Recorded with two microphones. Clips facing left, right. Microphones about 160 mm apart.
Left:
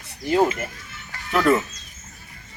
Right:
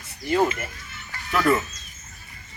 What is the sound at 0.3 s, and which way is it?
Speech, 25° left (ahead or behind).